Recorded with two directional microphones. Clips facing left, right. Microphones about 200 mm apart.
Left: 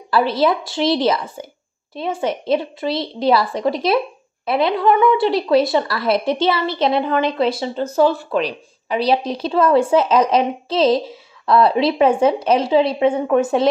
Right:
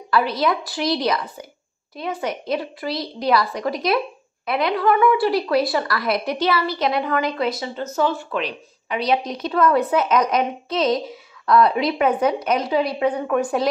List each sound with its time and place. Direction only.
0.1 s speech: 30° left (ahead or behind)